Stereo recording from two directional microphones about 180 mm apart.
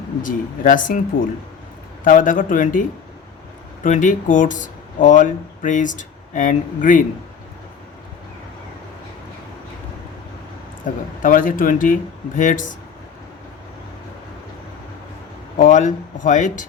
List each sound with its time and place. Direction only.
0.2 s speech: 50° left (ahead or behind)
3.8 s speech: 45° left (ahead or behind)
10.8 s speech: 50° left (ahead or behind)
15.5 s speech: 45° left (ahead or behind)